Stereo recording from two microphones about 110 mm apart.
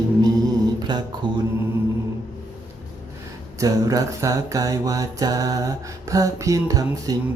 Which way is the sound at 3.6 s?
30° right (ahead or behind).